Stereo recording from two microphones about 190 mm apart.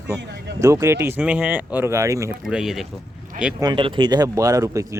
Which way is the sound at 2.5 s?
5° right (ahead or behind).